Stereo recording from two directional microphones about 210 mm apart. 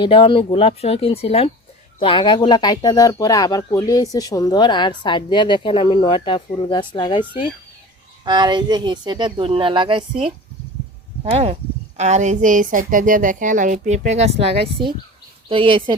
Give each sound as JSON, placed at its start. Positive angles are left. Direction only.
{"t": 0.0, "sound": "speech", "side_deg": 25}
{"t": 8.2, "sound": "speech", "side_deg": -20}